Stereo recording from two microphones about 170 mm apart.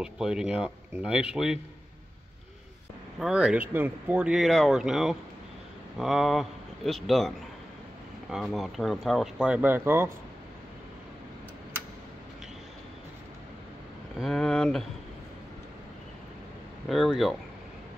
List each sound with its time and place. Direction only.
0.0 s speech: 5° right (ahead or behind)
3.2 s a man's voice: 5° right (ahead or behind)
14.2 s speech: 5° left (ahead or behind)
16.9 s speech: centre (ahead or behind)